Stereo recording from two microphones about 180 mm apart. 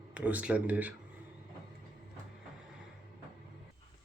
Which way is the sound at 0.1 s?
10° right (ahead or behind).